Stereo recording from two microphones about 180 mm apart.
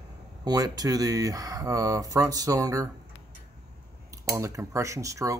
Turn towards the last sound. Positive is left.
turn(degrees=-15)  # may be behind; listen again after turning